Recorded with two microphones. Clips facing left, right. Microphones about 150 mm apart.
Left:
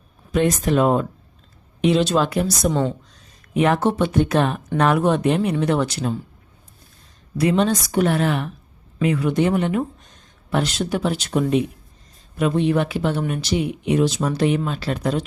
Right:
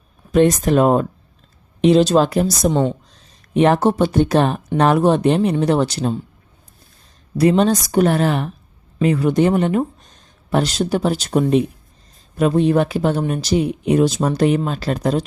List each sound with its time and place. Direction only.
0.3 s speech: 40° right (ahead or behind)
7.3 s speech: 40° right (ahead or behind)